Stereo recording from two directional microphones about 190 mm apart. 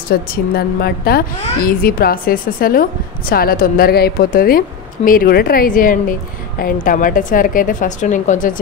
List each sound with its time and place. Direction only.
0.1 s a woman's voice: 55° left (ahead or behind)